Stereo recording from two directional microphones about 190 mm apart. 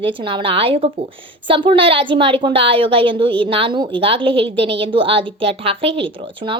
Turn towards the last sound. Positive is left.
turn(degrees=-30)  # may be behind; listen again after turning